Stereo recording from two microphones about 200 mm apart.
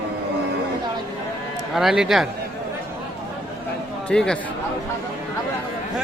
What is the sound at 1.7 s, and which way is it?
Speech, centre (ahead or behind).